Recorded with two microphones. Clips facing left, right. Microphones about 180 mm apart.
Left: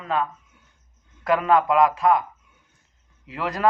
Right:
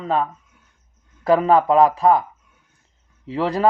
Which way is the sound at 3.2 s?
30° right (ahead or behind).